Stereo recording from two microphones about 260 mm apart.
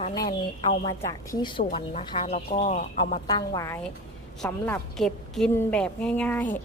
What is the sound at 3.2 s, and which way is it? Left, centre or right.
A woman's voice, centre.